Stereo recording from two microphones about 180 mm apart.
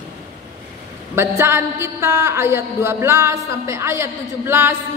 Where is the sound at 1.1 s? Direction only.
15° right (ahead or behind).